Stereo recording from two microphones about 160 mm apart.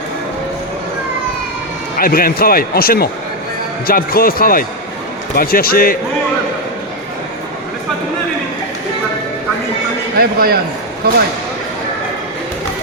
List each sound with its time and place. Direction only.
2.0 s speech: 65° left (ahead or behind)
10.2 s a man's voice: 75° right (ahead or behind)